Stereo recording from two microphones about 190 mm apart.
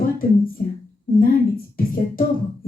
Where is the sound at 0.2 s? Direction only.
50° left (ahead or behind).